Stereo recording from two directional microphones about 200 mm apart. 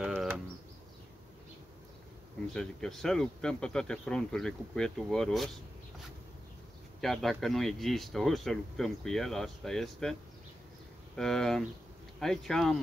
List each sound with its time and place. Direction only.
2.5 s speech: centre (ahead or behind)
7.0 s speech: centre (ahead or behind)
11.1 s speech: centre (ahead or behind)